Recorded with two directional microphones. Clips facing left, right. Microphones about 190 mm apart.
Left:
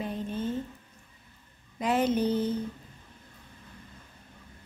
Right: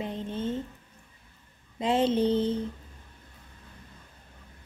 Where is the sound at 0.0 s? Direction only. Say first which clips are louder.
Even; 25° right (ahead or behind).